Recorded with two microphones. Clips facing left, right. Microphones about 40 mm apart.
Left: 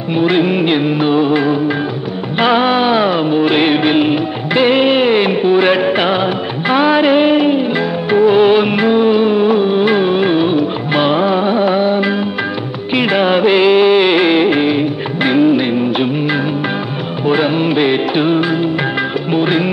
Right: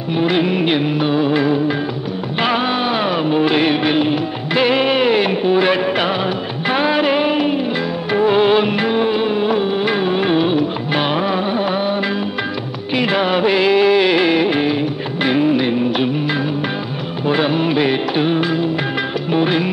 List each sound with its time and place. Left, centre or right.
0.3 s music of bollywood: left
2.4 s music of bollywood: left
3.1 s music: left
3.5 s music of bollywood: left
4.1 s music: left
6.8 s music of bollywood: left
8.3 s music of bollywood: left
8.6 s music of bollywood: left
9.9 s music: left
12.9 s music of bollywood: left
15.2 s music: left
17.7 s music: left